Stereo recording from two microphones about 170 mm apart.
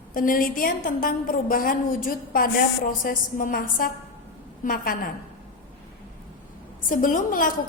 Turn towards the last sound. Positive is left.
turn(degrees=55)  # may be behind; listen again after turning